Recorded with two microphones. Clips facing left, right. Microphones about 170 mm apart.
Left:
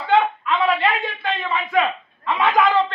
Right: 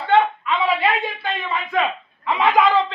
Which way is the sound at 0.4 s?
Centre (ahead or behind).